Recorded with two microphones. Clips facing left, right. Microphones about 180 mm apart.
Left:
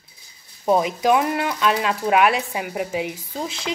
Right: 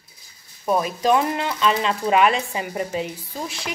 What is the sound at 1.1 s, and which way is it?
Speech, 5° left (ahead or behind).